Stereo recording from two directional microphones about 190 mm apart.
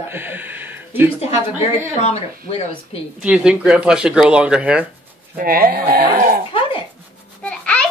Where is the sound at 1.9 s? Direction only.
35° left (ahead or behind).